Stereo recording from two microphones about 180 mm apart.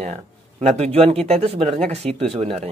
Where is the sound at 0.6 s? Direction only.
35° right (ahead or behind).